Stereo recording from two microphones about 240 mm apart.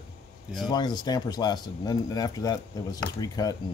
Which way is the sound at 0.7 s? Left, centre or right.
Centre.